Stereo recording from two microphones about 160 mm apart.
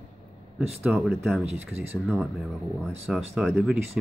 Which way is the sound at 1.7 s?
40° right (ahead or behind).